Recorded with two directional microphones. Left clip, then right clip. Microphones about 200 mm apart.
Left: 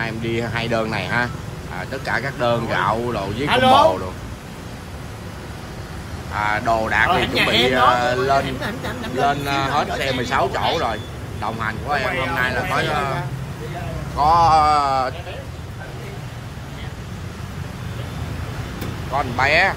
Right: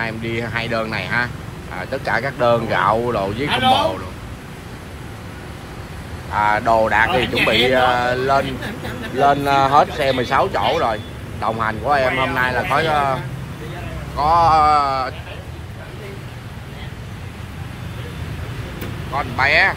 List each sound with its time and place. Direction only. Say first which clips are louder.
0.0 s speech: even; 15° left (ahead or behind)
3.4 s speech: left 4 dB; 20° left (ahead or behind)
6.3 s speech: right 4 dB; 5° left (ahead or behind)
14.1 s speech: even; 10° left (ahead or behind)
19.1 s speech: right 1 dB; 15° left (ahead or behind)